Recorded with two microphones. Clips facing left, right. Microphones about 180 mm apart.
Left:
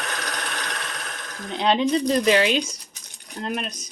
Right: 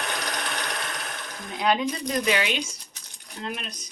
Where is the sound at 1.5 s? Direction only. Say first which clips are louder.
Left 4 dB; 25° left (ahead or behind).